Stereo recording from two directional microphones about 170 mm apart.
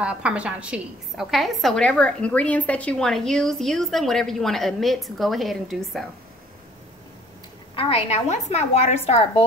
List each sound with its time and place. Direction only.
0.0 s a woman's voice: 5° right (ahead or behind)
7.7 s a woman's voice: 30° left (ahead or behind)